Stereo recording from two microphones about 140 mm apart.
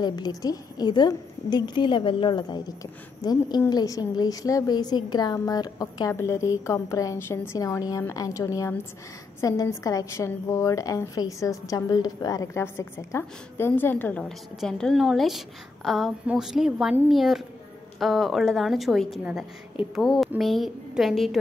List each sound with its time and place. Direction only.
0.0 s a woman's voice: 30° left (ahead or behind); by 21.4 s centre (ahead or behind)